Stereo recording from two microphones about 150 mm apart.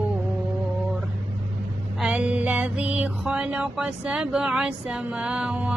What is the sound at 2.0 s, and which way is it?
Mantra, 5° right (ahead or behind).